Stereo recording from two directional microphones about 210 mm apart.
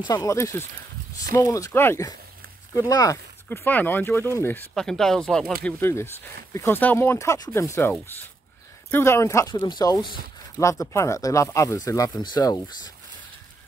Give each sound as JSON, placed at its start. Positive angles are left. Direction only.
{"t": 0.0, "sound": "speech", "side_deg": 15}
{"t": 8.9, "sound": "speech", "side_deg": 10}